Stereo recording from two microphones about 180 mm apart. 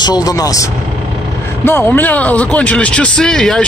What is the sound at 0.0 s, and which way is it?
Speech, 20° left (ahead or behind).